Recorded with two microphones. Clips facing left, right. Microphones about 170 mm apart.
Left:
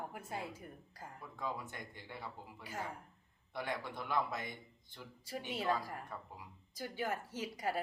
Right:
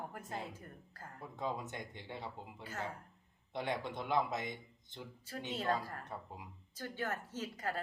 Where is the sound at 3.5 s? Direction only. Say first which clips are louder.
Right 3 dB; 20° right (ahead or behind).